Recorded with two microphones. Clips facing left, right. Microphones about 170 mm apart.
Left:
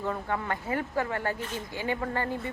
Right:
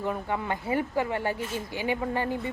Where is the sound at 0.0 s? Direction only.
15° right (ahead or behind).